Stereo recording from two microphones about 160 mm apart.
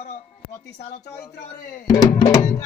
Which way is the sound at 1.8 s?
25° left (ahead or behind).